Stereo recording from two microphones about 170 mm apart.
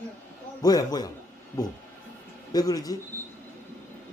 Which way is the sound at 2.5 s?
20° left (ahead or behind).